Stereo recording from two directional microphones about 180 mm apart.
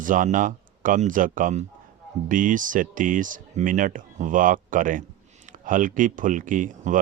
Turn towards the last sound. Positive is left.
turn(degrees=-45)  # may be behind; listen again after turning